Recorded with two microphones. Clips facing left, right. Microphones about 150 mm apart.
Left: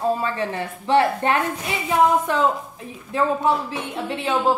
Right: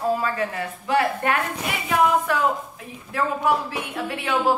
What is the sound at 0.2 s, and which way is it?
A woman's voice, 25° left (ahead or behind).